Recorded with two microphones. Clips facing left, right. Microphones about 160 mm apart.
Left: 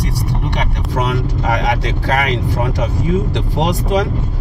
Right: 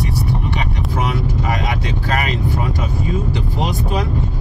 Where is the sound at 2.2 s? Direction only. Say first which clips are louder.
Left 3 dB; 70° left (ahead or behind).